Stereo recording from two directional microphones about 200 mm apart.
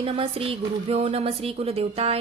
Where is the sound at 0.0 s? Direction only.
30° right (ahead or behind).